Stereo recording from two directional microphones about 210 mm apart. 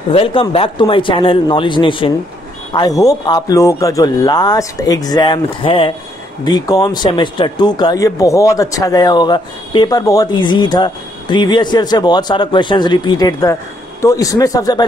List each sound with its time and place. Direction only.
0.1 s speech: 25° left (ahead or behind)